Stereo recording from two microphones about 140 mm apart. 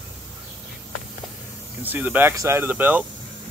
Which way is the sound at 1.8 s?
15° right (ahead or behind).